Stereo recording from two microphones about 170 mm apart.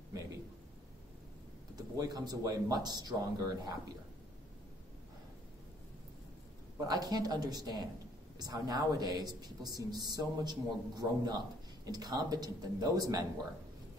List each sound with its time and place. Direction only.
1.8 s speech: 20° right (ahead or behind)
6.9 s speech: 20° right (ahead or behind)